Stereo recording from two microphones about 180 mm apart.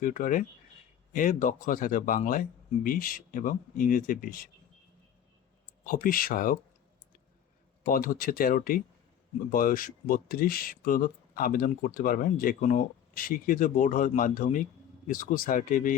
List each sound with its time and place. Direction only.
0.0 s speech: 45° left (ahead or behind)
5.8 s speech: 50° left (ahead or behind)
7.9 s speech: 55° left (ahead or behind)